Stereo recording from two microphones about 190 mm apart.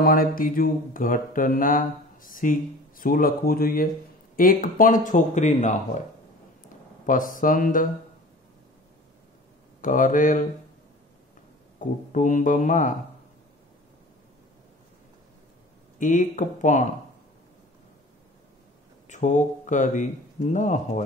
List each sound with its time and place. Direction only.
0.0 s mantra: 50° left (ahead or behind)
7.1 s mantra: 45° left (ahead or behind)
9.8 s mantra: 45° left (ahead or behind)
11.8 s mantra: 40° left (ahead or behind)
16.0 s speech: 40° left (ahead or behind)
19.0 s speech: 40° left (ahead or behind)